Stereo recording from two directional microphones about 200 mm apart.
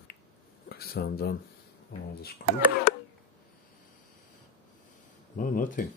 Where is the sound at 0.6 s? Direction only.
50° left (ahead or behind).